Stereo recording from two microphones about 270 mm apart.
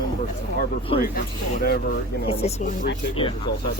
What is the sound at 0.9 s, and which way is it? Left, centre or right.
Speech, centre.